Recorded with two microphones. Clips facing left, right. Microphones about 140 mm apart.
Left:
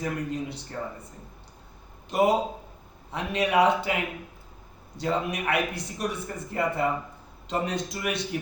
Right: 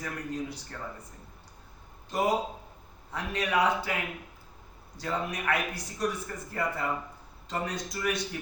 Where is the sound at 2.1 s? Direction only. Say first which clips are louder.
Left 5 dB; 25° left (ahead or behind).